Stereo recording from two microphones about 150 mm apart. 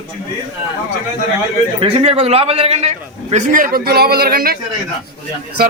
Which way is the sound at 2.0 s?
40° right (ahead or behind).